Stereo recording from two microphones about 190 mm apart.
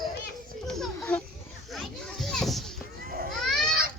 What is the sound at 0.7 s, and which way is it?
Children playing, 5° left (ahead or behind).